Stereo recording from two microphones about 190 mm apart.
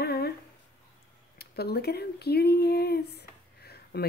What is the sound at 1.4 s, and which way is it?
A woman's voice, 55° left (ahead or behind).